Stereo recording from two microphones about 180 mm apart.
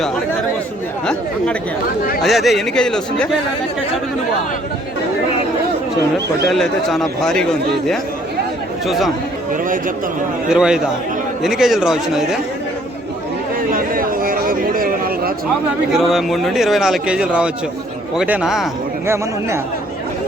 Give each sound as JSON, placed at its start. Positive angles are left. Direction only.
{"t": 2.2, "sound": "a man's voice", "side_deg": 0}
{"t": 6.5, "sound": "a man's voice", "side_deg": 0}
{"t": 10.5, "sound": "a man's voice", "side_deg": -5}
{"t": 13.7, "sound": "chatter", "side_deg": -50}
{"t": 16.0, "sound": "a man's voice", "side_deg": 0}
{"t": 19.0, "sound": "speech", "side_deg": -15}